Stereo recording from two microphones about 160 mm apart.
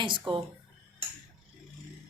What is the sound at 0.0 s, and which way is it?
Speech, 30° right (ahead or behind).